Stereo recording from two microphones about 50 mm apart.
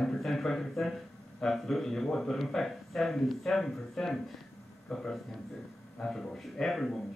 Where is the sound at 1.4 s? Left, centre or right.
Centre.